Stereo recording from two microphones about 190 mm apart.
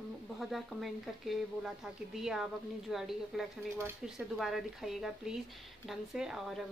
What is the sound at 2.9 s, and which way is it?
Speech, centre (ahead or behind).